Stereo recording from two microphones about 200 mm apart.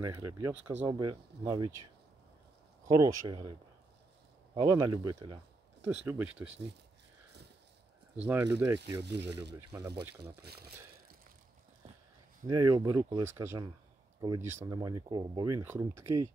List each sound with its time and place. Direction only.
0.0 s speech: 15° right (ahead or behind)
2.9 s speech: 15° right (ahead or behind)
4.6 s speech: 20° right (ahead or behind)
5.9 s speech: 10° right (ahead or behind)
8.2 s speech: 10° right (ahead or behind)
9.0 s speech: 60° right (ahead or behind)
9.6 s speech: 15° right (ahead or behind)
10.4 s speech: 50° right (ahead or behind)
12.4 s speech: 15° right (ahead or behind)